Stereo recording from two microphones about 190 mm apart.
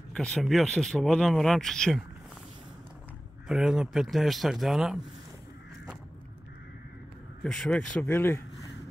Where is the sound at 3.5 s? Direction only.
5° right (ahead or behind).